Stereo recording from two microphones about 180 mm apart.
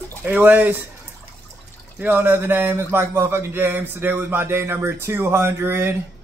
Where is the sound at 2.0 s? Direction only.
10° right (ahead or behind).